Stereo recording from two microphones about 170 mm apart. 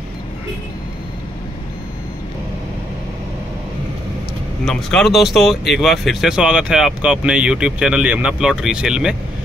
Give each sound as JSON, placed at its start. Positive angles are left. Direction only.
{"t": 4.6, "sound": "speech", "side_deg": 0}